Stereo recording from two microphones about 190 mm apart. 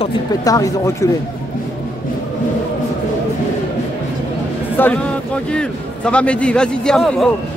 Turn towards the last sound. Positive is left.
turn(degrees=0)  # may be behind; listen again after turning